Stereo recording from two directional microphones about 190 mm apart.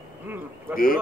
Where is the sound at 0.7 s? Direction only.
50° left (ahead or behind).